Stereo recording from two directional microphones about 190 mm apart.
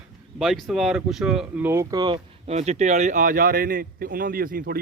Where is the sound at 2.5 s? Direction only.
35° right (ahead or behind).